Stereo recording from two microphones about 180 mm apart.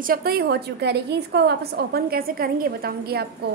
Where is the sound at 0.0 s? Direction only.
55° right (ahead or behind).